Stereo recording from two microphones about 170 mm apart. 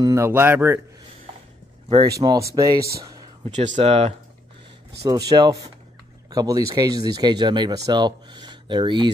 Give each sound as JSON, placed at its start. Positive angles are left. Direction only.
{"t": 0.0, "sound": "speech", "side_deg": -15}
{"t": 1.9, "sound": "speech", "side_deg": -25}
{"t": 3.4, "sound": "speech", "side_deg": -45}
{"t": 5.3, "sound": "speech", "side_deg": -20}